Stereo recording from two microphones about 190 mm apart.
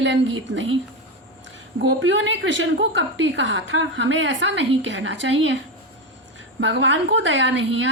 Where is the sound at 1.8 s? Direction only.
75° right (ahead or behind).